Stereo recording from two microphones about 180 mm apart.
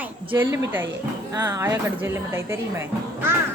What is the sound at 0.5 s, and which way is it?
A woman's voice, 15° right (ahead or behind).